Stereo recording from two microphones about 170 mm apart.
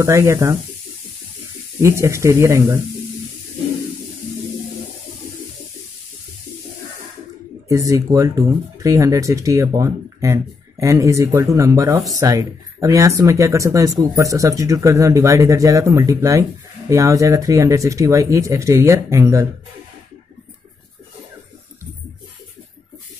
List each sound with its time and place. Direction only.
0.0 s speech: 15° right (ahead or behind)
1.8 s speech: 15° right (ahead or behind)
7.6 s speech: 20° right (ahead or behind)